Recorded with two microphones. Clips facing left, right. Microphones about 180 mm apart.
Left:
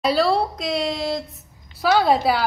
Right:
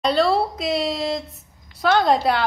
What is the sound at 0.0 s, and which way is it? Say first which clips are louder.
A woman's voice: even; centre (ahead or behind).